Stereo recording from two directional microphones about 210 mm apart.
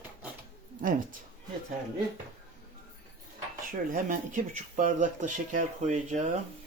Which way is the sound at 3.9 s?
40° right (ahead or behind).